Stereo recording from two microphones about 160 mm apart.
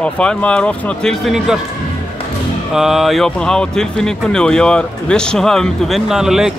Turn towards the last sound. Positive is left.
turn(degrees=-5)  # may be behind; listen again after turning